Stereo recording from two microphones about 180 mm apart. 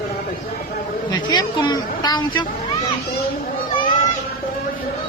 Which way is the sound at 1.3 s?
25° left (ahead or behind).